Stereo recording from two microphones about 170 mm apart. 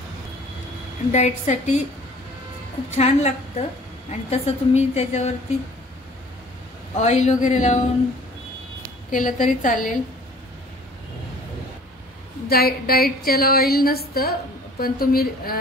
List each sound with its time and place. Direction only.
1.1 s speech: 45° left (ahead or behind)
2.9 s a woman's voice: 40° left (ahead or behind)
7.0 s speech: 40° left (ahead or behind)
9.1 s speech: 50° left (ahead or behind)
12.4 s a sound: 65° left (ahead or behind)